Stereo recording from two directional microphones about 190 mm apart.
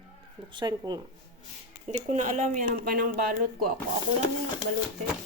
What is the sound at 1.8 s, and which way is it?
Speech, 35° right (ahead or behind).